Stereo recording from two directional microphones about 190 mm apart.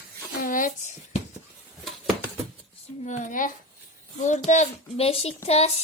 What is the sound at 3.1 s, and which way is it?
A woman's voice, 45° left (ahead or behind).